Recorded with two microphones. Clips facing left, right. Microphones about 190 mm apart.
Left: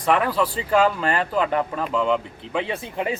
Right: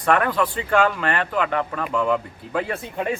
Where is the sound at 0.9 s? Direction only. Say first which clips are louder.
Left 1 dB; 30° left (ahead or behind).